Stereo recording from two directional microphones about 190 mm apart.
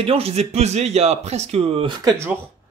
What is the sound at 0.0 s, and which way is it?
Speech, 30° right (ahead or behind).